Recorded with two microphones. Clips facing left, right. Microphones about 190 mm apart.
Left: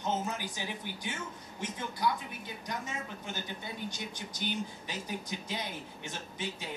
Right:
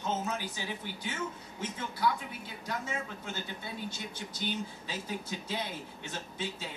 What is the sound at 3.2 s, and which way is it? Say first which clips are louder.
Speech: even; 15° left (ahead or behind).